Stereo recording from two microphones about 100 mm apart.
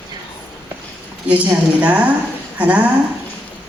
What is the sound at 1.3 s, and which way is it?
A woman's voice, 15° right (ahead or behind).